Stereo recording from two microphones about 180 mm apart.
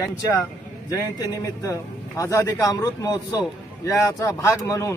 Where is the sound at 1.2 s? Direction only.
20° left (ahead or behind).